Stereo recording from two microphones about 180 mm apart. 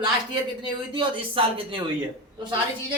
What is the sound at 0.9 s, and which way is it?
Speech, 30° right (ahead or behind).